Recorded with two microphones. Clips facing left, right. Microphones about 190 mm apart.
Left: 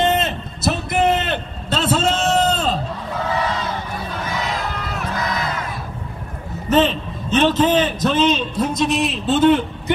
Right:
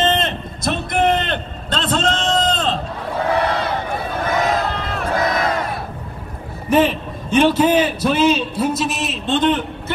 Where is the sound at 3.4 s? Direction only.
60° right (ahead or behind).